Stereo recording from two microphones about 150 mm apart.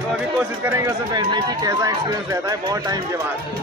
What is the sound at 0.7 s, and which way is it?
Speech, 20° right (ahead or behind).